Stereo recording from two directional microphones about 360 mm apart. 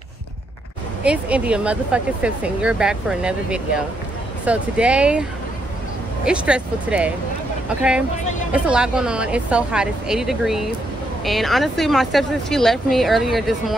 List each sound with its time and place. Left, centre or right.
1.0 s speech: centre
6.2 s speech: centre
8.5 s speech: centre